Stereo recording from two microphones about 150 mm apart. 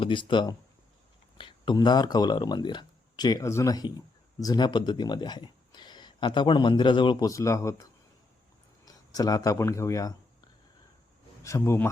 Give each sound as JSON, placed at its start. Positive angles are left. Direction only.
{"t": 0.0, "sound": "speech", "side_deg": 35}
{"t": 11.4, "sound": "speech", "side_deg": 20}